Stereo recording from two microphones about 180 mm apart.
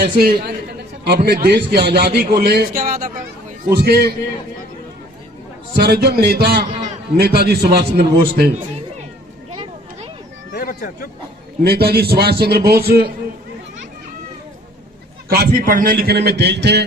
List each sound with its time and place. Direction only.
0.2 s a man's voice: 60° right (ahead or behind)
5.7 s a man's voice: 65° right (ahead or behind)
10.5 s a sound: 55° left (ahead or behind)
11.6 s a man's voice: 60° right (ahead or behind)
15.3 s a man's voice: 50° right (ahead or behind); by 16.8 s 70° right (ahead or behind)